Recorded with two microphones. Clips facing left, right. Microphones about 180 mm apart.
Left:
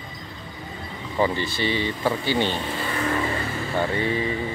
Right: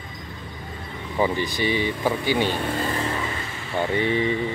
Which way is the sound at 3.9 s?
20° right (ahead or behind).